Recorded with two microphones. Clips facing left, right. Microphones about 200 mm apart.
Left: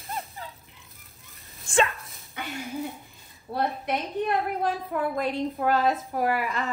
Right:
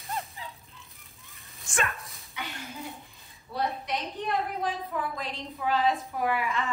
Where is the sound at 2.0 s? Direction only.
Centre (ahead or behind).